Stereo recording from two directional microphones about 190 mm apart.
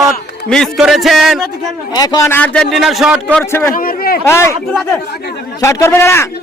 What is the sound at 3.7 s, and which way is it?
Speech, 50° left (ahead or behind).